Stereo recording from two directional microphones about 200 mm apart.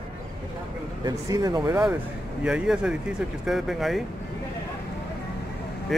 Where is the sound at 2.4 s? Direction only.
5° right (ahead or behind).